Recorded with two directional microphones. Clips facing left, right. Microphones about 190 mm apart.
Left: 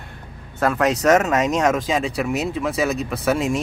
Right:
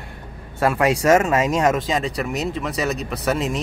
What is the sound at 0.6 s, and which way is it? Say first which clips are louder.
Speech: right 1 dB; 10° right (ahead or behind).